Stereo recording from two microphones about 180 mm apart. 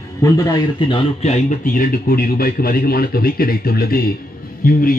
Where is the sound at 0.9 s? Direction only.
40° left (ahead or behind).